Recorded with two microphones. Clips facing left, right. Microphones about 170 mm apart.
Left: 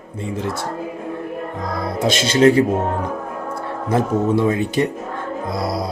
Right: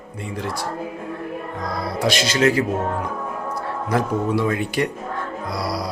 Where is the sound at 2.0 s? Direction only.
25° left (ahead or behind).